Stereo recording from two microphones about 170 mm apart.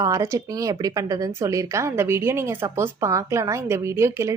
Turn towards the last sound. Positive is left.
turn(degrees=-15)  # may be behind; listen again after turning